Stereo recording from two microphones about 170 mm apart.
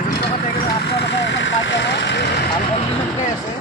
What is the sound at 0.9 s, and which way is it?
Speech, 85° left.